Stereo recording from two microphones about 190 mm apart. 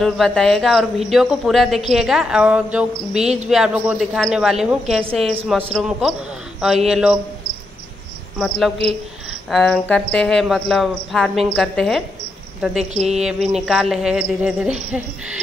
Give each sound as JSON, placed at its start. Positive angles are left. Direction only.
{"t": 0.0, "sound": "speech", "side_deg": 0}
{"t": 8.4, "sound": "speech", "side_deg": 5}
{"t": 12.9, "sound": "a sound", "side_deg": -35}
{"t": 13.2, "sound": "speech", "side_deg": 0}